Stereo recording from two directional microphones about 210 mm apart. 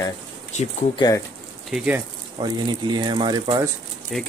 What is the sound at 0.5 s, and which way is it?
Speech, 35° left (ahead or behind).